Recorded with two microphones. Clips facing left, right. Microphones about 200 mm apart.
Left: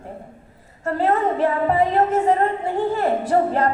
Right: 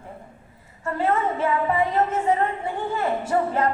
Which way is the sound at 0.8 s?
40° left (ahead or behind).